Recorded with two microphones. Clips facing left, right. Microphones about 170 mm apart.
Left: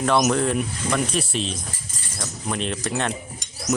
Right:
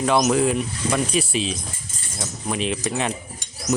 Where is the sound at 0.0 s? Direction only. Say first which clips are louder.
Right 1 dB; centre (ahead or behind).